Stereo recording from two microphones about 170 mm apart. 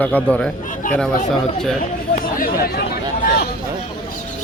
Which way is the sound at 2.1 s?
60° left (ahead or behind).